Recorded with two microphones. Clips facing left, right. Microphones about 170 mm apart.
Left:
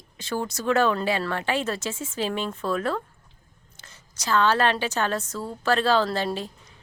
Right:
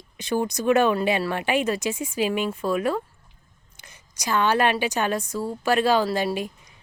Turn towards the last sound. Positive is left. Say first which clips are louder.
# right 2 dB
turn(degrees=-15)  # may be behind; listen again after turning